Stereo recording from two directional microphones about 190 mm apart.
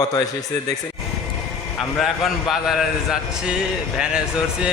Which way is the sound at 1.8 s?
Centre (ahead or behind).